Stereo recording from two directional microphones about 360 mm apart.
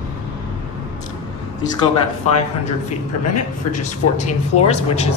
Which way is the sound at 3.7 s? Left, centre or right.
Centre.